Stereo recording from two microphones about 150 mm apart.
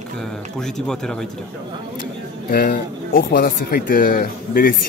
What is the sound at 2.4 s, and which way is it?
Speech, 90° left.